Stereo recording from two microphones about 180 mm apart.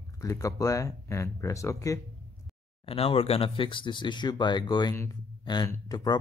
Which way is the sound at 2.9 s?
30° left (ahead or behind).